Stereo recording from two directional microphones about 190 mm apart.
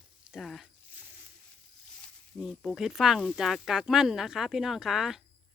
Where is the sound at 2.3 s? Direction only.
Centre (ahead or behind).